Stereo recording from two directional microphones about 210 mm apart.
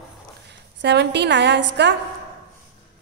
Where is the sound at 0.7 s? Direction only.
55° right (ahead or behind).